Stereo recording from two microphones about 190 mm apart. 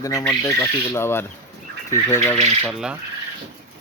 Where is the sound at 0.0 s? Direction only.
15° left (ahead or behind).